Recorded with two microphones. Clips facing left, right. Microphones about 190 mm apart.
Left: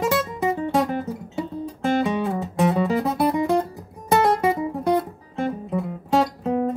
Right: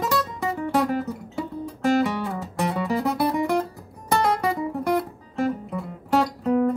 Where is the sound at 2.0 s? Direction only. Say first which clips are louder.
Left 4 dB; 20° left (ahead or behind).